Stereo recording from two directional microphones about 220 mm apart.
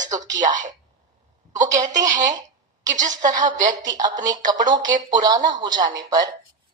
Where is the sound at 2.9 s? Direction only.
35° right (ahead or behind).